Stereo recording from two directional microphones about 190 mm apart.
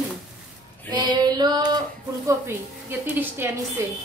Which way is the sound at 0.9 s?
20° right (ahead or behind).